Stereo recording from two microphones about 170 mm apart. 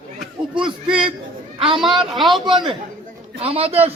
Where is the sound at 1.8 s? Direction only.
Centre (ahead or behind).